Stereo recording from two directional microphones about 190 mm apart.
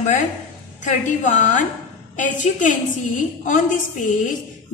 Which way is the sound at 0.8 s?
40° left (ahead or behind).